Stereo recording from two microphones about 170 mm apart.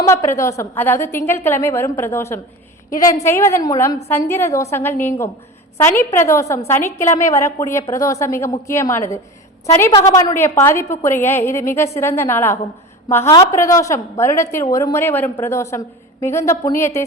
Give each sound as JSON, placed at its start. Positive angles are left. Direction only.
{"t": 0.0, "sound": "a woman's voice", "side_deg": 15}